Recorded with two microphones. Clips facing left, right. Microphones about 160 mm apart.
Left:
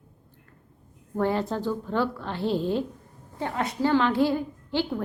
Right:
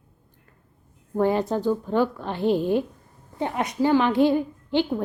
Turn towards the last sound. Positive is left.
turn(degrees=-20)  # may be behind; listen again after turning